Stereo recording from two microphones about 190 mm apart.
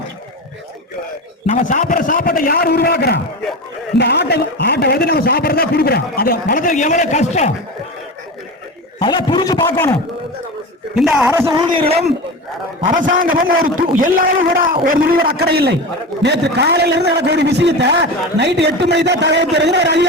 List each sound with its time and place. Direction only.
1.5 s a man's voice: 40° left (ahead or behind)
9.0 s a man's voice: 25° left (ahead or behind)
10.9 s speech: centre (ahead or behind)
11.3 s a man's voice: 15° right (ahead or behind); by 12.1 s 30° right (ahead or behind)
13.1 s a man's voice: 45° right (ahead or behind); by 20.1 s 65° right (ahead or behind)